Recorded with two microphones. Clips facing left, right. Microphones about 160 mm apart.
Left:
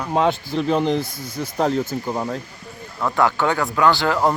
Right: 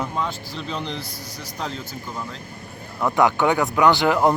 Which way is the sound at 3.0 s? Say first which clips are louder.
Right 1 dB; 20° right (ahead or behind).